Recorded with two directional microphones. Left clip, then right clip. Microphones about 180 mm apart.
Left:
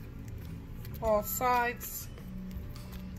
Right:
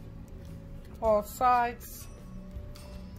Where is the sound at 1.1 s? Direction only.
15° right (ahead or behind).